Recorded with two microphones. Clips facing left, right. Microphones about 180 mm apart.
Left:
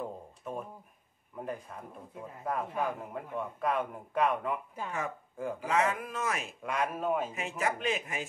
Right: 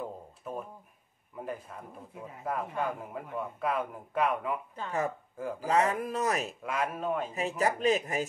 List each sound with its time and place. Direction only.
0.0 s a sound: centre (ahead or behind)
2.4 s a man's voice: 5° left (ahead or behind)
4.8 s speech: 10° left (ahead or behind)
5.6 s speech: 35° right (ahead or behind)
6.6 s a man's voice: centre (ahead or behind)
7.3 s speech: 35° right (ahead or behind)